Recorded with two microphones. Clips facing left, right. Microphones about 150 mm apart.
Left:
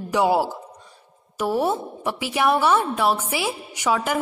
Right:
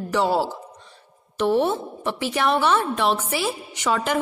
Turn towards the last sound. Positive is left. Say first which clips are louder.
# even
turn(degrees=5)  # may be behind; listen again after turning